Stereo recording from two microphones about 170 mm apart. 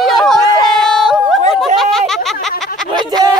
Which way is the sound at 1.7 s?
Centre (ahead or behind).